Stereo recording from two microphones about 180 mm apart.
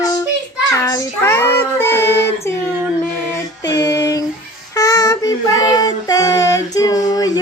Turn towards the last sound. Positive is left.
turn(degrees=20)  # may be behind; listen again after turning